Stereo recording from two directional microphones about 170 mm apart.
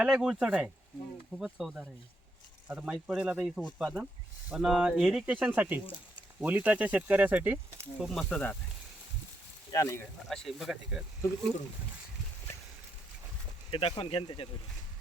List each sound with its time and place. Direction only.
0.0 s speech: 5° right (ahead or behind)
9.7 s speech: 15° left (ahead or behind)
10.2 s speech: centre (ahead or behind)
13.7 s speech: 30° left (ahead or behind)